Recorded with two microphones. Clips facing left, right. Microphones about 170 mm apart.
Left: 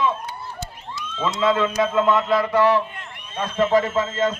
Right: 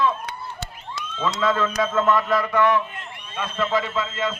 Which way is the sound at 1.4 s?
20° left (ahead or behind).